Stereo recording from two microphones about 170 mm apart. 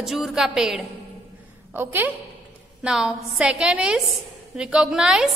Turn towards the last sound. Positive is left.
turn(degrees=-5)  # may be behind; listen again after turning